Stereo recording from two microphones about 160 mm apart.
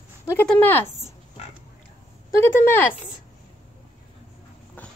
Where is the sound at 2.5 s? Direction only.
15° left (ahead or behind).